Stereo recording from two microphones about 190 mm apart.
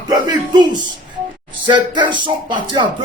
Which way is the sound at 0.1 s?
20° right (ahead or behind).